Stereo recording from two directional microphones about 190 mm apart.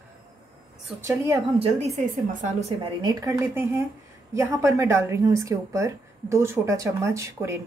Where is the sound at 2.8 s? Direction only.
20° right (ahead or behind).